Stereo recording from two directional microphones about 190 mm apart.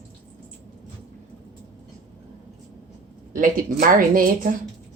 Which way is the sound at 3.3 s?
45° right (ahead or behind).